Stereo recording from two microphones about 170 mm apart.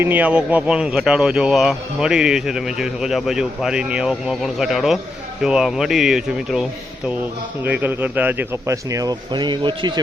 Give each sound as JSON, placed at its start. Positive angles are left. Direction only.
{"t": 0.0, "sound": "speech", "side_deg": -10}